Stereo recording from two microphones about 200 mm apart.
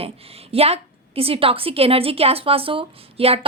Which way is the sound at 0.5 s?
30° right (ahead or behind).